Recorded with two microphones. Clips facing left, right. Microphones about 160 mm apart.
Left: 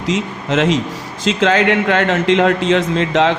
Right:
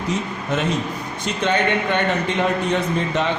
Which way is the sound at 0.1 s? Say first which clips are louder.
Left 6 dB; 90° left.